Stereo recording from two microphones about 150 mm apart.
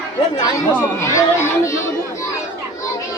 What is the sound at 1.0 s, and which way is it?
Speech, 20° left (ahead or behind).